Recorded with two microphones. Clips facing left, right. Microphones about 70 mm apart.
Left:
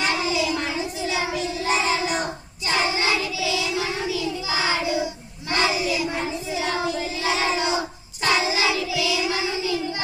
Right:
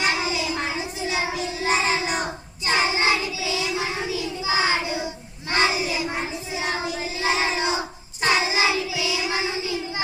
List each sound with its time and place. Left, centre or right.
0.0 s child singing: right